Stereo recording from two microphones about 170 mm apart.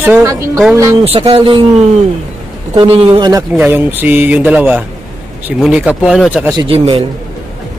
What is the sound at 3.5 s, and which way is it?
A man's voice, 10° right (ahead or behind).